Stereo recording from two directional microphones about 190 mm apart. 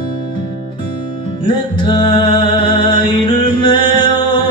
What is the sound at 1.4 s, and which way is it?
Music, 25° left (ahead or behind).